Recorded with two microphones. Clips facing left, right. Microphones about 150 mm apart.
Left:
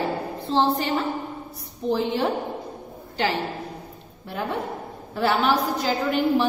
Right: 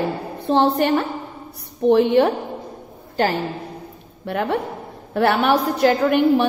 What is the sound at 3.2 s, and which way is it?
Speech, 50° right (ahead or behind).